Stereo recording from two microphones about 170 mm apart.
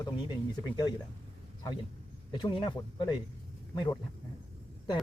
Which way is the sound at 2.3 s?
25° left (ahead or behind).